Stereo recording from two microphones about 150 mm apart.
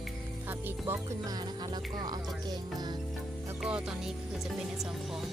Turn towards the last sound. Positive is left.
turn(degrees=0)  # may be behind; listen again after turning